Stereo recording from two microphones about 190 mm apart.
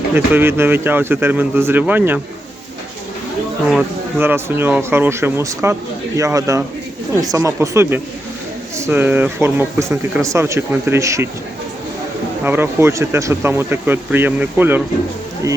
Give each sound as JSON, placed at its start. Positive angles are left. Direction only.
{"t": 0.1, "sound": "speech", "side_deg": -10}
{"t": 3.7, "sound": "speech", "side_deg": -5}
{"t": 12.5, "sound": "speech", "side_deg": -10}